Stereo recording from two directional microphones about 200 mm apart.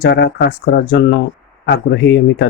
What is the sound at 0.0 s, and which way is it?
Speech, 55° left (ahead or behind).